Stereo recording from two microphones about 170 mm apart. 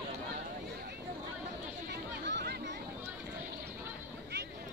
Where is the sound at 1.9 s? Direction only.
80° right.